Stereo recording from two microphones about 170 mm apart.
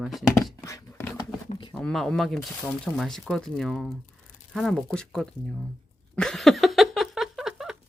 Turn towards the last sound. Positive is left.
turn(degrees=-5)  # may be behind; listen again after turning